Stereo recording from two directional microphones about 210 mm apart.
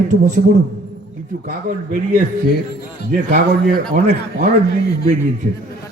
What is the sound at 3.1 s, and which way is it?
Speech, 45° right (ahead or behind).